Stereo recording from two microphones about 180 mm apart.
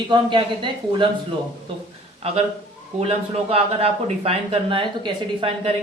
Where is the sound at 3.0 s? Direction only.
35° right (ahead or behind).